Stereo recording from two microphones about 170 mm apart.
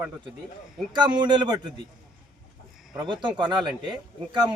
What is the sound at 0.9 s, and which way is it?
Speech, 25° right (ahead or behind).